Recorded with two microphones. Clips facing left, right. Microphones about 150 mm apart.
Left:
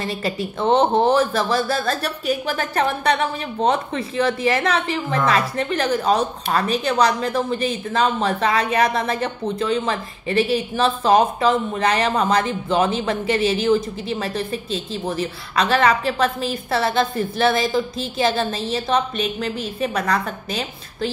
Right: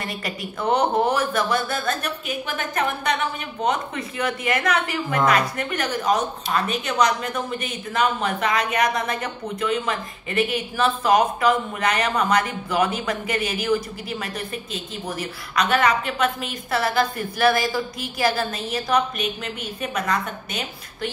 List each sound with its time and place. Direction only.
0.0 s speech: 25° left (ahead or behind)